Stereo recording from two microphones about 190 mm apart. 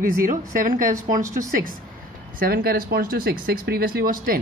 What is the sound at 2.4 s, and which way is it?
Speech, 50° right (ahead or behind).